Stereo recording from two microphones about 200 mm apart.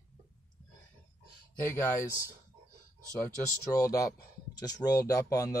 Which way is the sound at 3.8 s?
15° left (ahead or behind).